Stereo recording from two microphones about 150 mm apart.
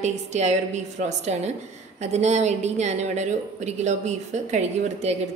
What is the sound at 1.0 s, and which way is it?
A woman's voice, 50° right (ahead or behind).